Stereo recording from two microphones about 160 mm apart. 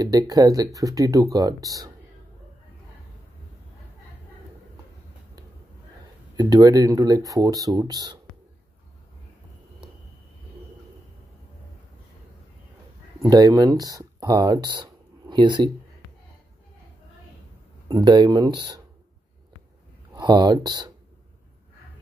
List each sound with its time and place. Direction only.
0.0 s speech: 25° right (ahead or behind)
6.3 s speech: 25° right (ahead or behind)
13.2 s speech: 25° right (ahead or behind)
17.8 s speech: 25° right (ahead or behind)
20.2 s speech: 25° right (ahead or behind)